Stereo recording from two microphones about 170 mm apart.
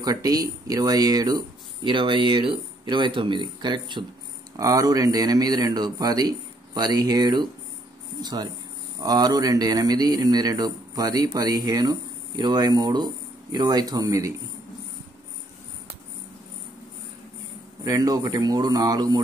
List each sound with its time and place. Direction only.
0.0 s speech: 20° right (ahead or behind)
17.8 s speech: 20° right (ahead or behind)